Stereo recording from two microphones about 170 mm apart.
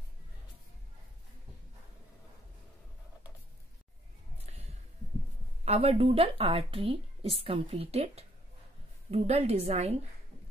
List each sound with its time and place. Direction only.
5.7 s speech: 35° right (ahead or behind)